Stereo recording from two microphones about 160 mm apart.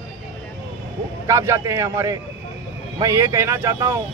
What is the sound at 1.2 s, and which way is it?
Speech, 20° right (ahead or behind).